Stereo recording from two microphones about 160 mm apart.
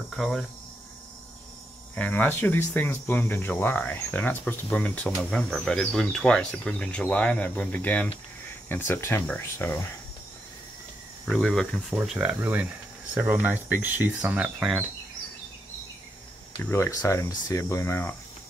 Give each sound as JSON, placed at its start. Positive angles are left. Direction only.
{"t": 0.1, "sound": "speech", "side_deg": 0}
{"t": 2.0, "sound": "speech", "side_deg": 10}
{"t": 11.2, "sound": "speech", "side_deg": 5}
{"t": 16.6, "sound": "speech", "side_deg": 15}